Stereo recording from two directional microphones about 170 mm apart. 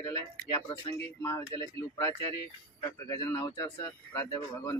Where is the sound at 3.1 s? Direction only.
20° left (ahead or behind).